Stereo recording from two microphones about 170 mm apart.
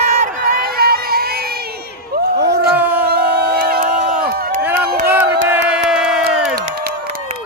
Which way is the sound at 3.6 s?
55° right (ahead or behind).